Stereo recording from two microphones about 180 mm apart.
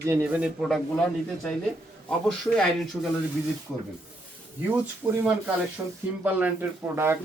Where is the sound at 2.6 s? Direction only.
Centre (ahead or behind).